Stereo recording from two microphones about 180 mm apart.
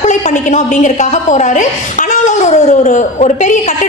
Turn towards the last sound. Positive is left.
turn(degrees=45)  # may be behind; listen again after turning